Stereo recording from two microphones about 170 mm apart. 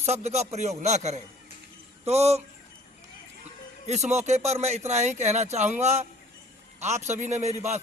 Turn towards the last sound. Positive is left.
turn(degrees=-40)  # may be behind; listen again after turning